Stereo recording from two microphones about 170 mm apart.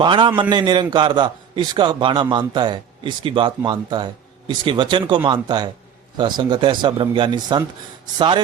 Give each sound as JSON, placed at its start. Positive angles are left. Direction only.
{"t": 0.0, "sound": "a man's voice", "side_deg": -30}